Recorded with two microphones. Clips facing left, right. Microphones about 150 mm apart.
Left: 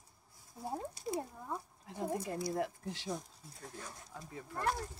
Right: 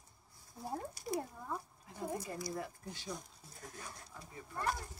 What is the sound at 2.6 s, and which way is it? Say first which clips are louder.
Speech: left 7 dB; 80° left.